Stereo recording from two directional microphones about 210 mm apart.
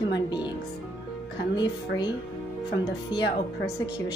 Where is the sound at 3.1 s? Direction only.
20° left (ahead or behind).